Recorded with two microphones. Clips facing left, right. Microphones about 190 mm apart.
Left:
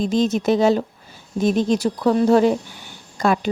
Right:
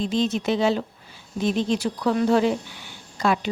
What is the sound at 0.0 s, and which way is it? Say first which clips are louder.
A woman's voice: left 4 dB; 45° left (ahead or behind).